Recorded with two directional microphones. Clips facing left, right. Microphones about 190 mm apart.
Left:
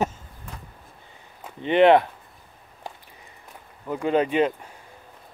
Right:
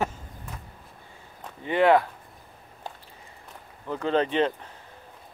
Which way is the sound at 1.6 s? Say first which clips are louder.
Left 4 dB; 20° left (ahead or behind).